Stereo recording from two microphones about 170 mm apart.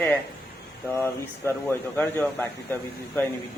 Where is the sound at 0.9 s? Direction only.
15° left (ahead or behind).